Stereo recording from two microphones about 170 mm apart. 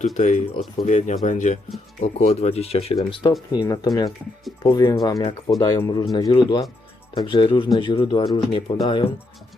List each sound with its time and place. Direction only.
0.0 s speech: 45° left (ahead or behind)